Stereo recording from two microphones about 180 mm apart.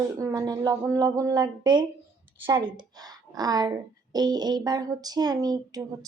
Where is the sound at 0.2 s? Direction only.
20° right (ahead or behind).